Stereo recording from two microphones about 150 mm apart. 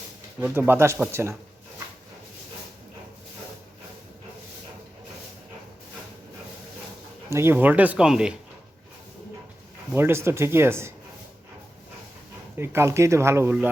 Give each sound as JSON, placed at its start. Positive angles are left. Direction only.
{"t": 0.3, "sound": "speech", "side_deg": -15}
{"t": 7.3, "sound": "speech", "side_deg": -15}
{"t": 9.9, "sound": "speech", "side_deg": -15}
{"t": 12.5, "sound": "speech", "side_deg": -15}